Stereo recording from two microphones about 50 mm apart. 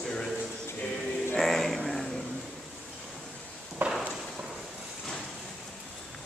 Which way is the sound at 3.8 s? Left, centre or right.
Right.